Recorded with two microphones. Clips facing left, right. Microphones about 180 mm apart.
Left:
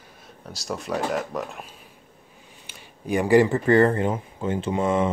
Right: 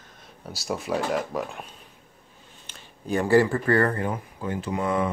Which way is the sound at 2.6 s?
10° left (ahead or behind).